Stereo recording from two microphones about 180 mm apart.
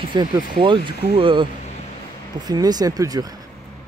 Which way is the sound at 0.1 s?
25° right (ahead or behind).